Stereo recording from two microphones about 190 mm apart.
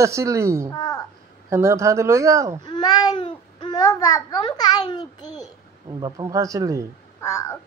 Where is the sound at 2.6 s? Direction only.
20° left (ahead or behind).